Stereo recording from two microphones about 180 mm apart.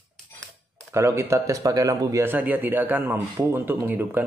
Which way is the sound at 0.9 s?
15° right (ahead or behind).